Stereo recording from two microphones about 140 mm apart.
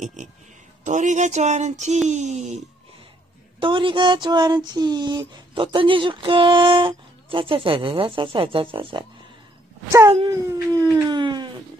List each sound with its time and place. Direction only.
0.0 s speech: 60° right (ahead or behind)
3.5 s a sound: 40° right (ahead or behind)
10.3 s howl: 25° right (ahead or behind)